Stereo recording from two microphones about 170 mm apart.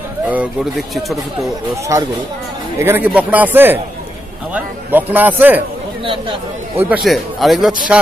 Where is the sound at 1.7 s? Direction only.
20° right (ahead or behind).